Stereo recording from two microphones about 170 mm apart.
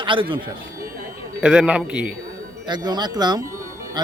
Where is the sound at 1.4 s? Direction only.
5° right (ahead or behind).